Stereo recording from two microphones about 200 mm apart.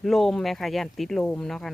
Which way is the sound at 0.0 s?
Centre (ahead or behind).